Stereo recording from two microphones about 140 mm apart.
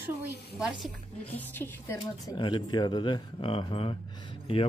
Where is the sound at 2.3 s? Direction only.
30° left (ahead or behind).